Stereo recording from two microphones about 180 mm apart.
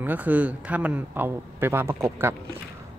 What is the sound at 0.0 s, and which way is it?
A man's voice, 10° right (ahead or behind).